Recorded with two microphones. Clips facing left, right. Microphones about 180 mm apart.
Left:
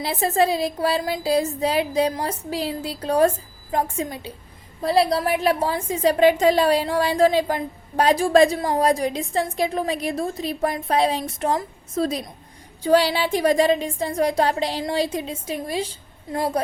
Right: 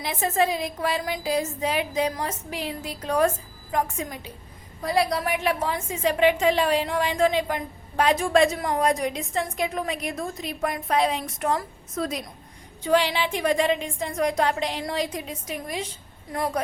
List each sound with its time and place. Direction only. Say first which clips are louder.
0.0 s a woman's voice: left 3 dB; 35° left (ahead or behind)